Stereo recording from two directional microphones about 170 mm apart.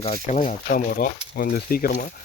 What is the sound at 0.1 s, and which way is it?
Speech, 50° left (ahead or behind).